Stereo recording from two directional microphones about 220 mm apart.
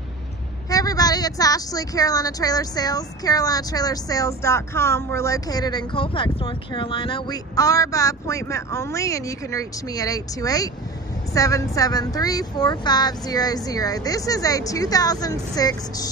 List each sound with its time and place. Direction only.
0.7 s a woman's voice: 15° left (ahead or behind)